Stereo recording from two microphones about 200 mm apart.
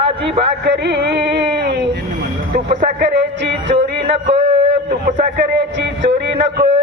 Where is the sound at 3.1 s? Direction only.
60° right (ahead or behind).